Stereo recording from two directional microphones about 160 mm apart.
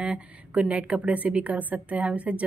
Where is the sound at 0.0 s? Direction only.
5° right (ahead or behind).